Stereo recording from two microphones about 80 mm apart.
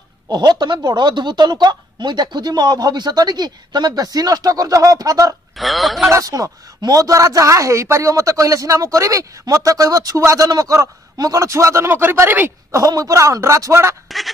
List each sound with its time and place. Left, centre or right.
0.3 s a woman's voice: right
5.6 s speech: centre
6.2 s speech: right
12.7 s a man's voice: right
14.0 s a sound: centre